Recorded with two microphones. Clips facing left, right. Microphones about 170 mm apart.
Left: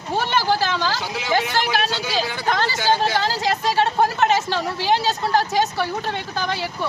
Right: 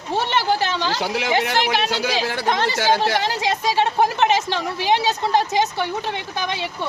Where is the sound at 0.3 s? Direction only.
20° right (ahead or behind).